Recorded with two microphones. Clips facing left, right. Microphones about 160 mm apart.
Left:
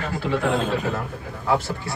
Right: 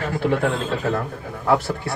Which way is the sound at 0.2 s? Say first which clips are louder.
Right 4 dB; 55° right (ahead or behind).